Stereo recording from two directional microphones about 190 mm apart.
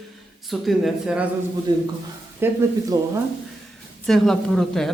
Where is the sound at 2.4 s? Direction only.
10° right (ahead or behind).